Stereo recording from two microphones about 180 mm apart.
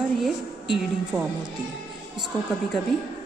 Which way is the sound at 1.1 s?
15° right (ahead or behind).